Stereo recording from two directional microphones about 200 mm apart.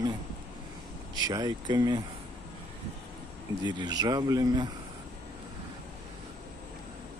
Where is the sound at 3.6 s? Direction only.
20° right (ahead or behind).